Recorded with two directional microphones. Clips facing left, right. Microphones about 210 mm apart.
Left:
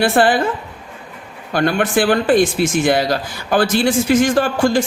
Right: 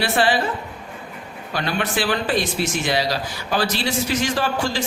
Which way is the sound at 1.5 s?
50° left (ahead or behind).